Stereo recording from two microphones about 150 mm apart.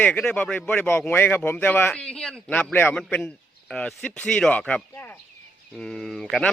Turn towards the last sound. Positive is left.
turn(degrees=0)  # may be behind; listen again after turning